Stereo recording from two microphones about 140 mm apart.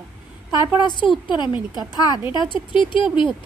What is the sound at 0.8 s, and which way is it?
Speech, 35° left (ahead or behind).